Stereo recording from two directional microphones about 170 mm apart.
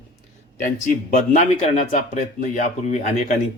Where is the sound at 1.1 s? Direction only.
45° left (ahead or behind).